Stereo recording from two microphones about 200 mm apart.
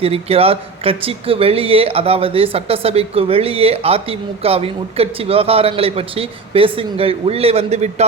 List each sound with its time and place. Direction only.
0.0 s speech: 30° right (ahead or behind)